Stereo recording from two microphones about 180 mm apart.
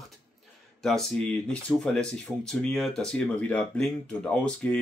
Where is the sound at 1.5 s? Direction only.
5° left (ahead or behind).